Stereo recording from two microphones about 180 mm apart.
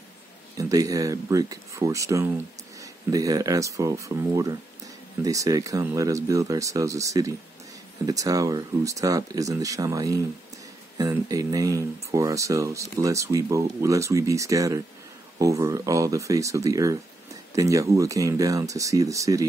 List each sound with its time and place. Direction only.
0.6 s speech: 20° right (ahead or behind)